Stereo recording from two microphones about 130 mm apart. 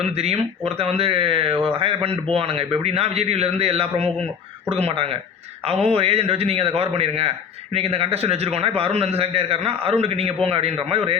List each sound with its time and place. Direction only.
0.0 s a man's voice: 55° right (ahead or behind)